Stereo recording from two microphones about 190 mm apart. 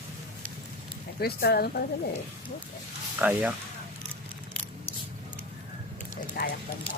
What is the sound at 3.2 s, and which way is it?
Speech, 5° right (ahead or behind).